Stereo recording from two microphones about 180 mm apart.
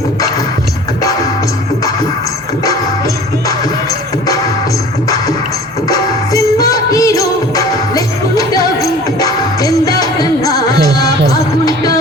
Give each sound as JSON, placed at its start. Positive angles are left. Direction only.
{"t": 5.9, "sound": "music", "side_deg": 20}
{"t": 11.6, "sound": "music", "side_deg": 20}